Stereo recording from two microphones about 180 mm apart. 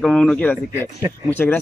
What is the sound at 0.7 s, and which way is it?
Speech, 15° right (ahead or behind).